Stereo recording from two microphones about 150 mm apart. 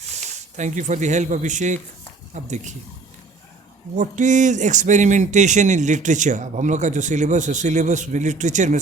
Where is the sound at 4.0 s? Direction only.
55° right (ahead or behind).